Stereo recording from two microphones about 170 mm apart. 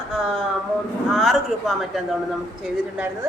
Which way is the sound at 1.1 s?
Centre (ahead or behind).